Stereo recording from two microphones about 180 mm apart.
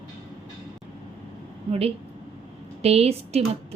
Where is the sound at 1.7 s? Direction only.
30° right (ahead or behind).